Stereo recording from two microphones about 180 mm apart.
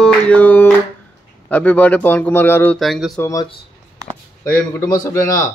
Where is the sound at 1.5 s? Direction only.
10° left (ahead or behind).